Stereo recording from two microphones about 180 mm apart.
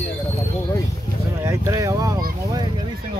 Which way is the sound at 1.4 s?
15° right (ahead or behind).